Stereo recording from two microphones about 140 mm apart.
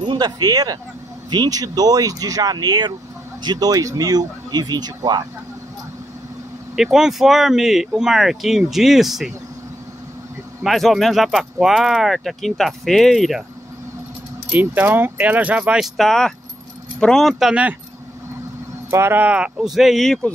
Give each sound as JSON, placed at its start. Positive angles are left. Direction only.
{"t": 0.0, "sound": "speech", "side_deg": -35}
{"t": 6.7, "sound": "speech", "side_deg": -5}
{"t": 10.6, "sound": "speech", "side_deg": 0}
{"t": 14.5, "sound": "speech", "side_deg": -15}
{"t": 18.9, "sound": "speech", "side_deg": -15}